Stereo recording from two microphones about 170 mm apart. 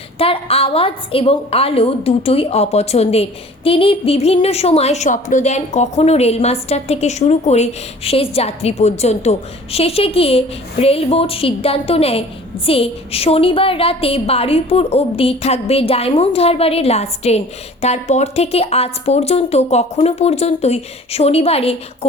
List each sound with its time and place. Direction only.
0.2 s a woman's voice: 35° left (ahead or behind)